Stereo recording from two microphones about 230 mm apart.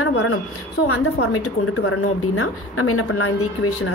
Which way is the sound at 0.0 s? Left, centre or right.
Left.